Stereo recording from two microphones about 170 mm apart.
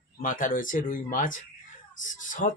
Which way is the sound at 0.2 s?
50° left (ahead or behind).